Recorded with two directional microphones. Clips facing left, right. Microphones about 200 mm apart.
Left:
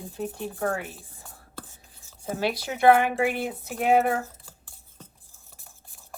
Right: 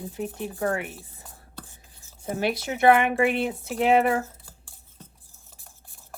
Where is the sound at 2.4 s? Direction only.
20° right (ahead or behind).